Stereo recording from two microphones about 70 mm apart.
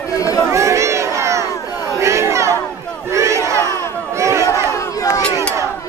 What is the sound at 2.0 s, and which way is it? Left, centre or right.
Crowd, right.